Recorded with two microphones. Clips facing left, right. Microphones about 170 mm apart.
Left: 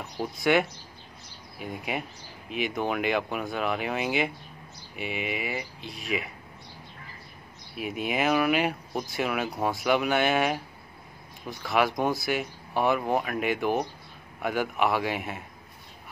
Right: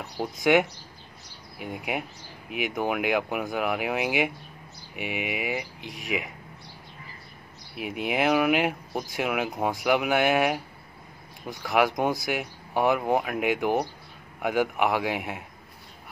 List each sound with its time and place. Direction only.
0.2 s speech: 15° right (ahead or behind)
8.0 s speech: 10° right (ahead or behind)